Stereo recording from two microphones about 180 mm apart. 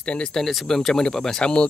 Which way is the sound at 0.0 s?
5° left (ahead or behind).